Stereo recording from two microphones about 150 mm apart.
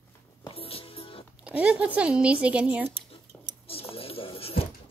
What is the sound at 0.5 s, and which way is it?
Music, 40° left (ahead or behind).